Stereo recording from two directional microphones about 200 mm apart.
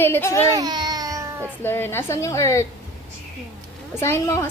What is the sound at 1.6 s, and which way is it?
A woman's voice, 10° left (ahead or behind).